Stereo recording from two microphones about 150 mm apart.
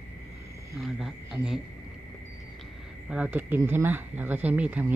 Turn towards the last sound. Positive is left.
turn(degrees=-10)  # may be behind; listen again after turning